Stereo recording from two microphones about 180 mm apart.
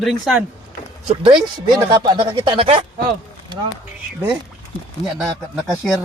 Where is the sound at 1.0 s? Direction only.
30° right (ahead or behind).